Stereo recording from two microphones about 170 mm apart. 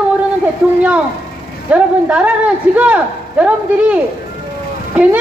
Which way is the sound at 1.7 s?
5° right (ahead or behind).